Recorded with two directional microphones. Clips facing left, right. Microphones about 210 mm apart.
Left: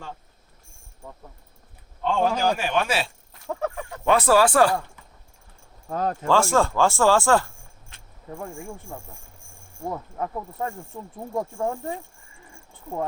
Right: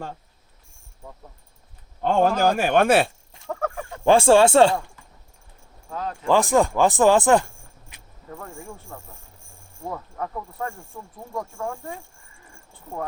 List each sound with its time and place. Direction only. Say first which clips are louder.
2.0 s a man's voice: right 3 dB; 45° right (ahead or behind)
3.4 s fowl: even; 10° left (ahead or behind)
4.0 s speech: right 4 dB; 30° right (ahead or behind)
5.9 s speech: left 5 dB; 40° left (ahead or behind)
6.2 s speech: right 3 dB; 15° right (ahead or behind)
8.4 s speech: left 4 dB; 15° left (ahead or behind)